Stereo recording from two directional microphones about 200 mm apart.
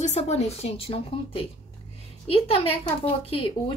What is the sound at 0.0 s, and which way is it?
Speech, 35° left (ahead or behind).